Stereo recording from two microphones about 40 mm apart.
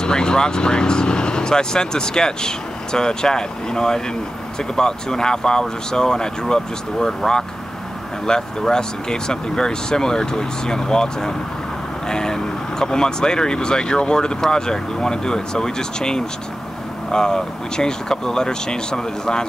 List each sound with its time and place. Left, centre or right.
0.0 s speech: centre